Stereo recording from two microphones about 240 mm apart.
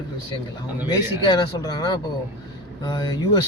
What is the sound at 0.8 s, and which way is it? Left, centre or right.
Speech, centre.